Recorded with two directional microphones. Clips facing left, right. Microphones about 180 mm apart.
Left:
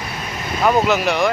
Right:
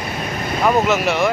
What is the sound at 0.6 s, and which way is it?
Speech, centre (ahead or behind).